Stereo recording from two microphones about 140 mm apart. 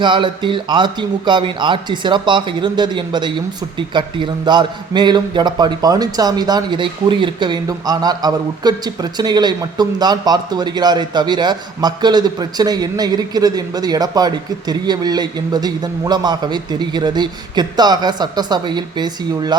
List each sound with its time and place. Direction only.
0.0 s a man's voice: 35° right (ahead or behind)